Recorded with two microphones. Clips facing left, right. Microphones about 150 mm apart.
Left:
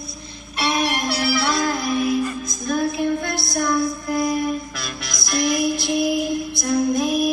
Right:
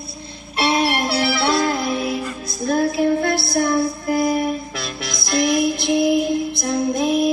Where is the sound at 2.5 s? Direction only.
35° right (ahead or behind).